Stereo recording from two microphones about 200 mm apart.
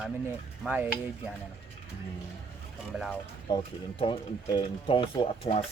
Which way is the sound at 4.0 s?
25° left (ahead or behind).